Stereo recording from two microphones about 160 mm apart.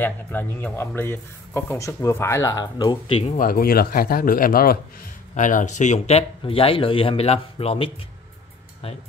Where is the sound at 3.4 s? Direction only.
65° left (ahead or behind).